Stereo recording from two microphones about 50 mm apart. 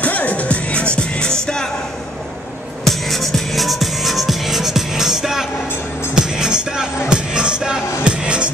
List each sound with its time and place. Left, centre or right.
0.0 s music: left; by 1.7 s centre
2.8 s music: centre; by 8.5 s right